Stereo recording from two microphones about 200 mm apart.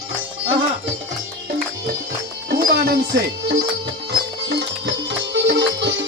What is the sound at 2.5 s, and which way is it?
Music, 50° right (ahead or behind).